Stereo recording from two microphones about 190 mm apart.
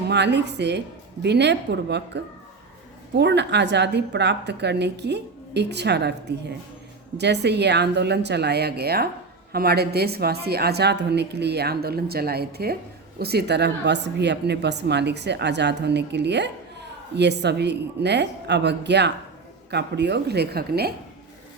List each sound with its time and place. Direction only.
0.1 s a woman's voice: 65° right (ahead or behind)